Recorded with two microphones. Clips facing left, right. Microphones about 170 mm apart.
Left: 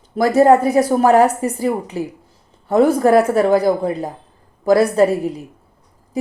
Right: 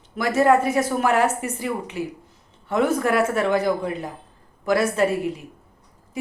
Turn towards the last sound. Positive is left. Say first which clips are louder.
# left 6 dB
turn(degrees=35)  # may be behind; listen again after turning